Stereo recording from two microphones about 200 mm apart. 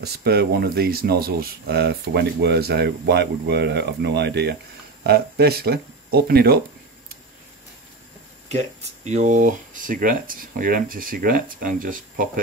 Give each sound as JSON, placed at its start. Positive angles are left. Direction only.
{"t": 0.0, "sound": "speech", "side_deg": -55}
{"t": 8.5, "sound": "speech", "side_deg": -35}